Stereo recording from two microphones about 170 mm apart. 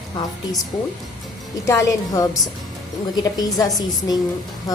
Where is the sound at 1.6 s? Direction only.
20° left (ahead or behind).